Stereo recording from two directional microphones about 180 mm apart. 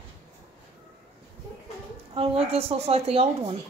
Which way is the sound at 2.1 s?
35° right (ahead or behind).